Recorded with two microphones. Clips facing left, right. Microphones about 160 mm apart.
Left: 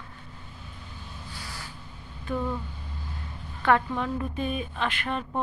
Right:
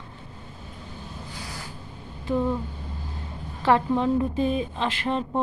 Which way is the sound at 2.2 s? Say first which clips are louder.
Right 5 dB; 20° right (ahead or behind).